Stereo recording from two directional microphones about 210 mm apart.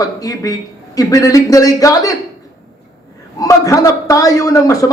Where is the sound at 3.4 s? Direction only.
15° left (ahead or behind).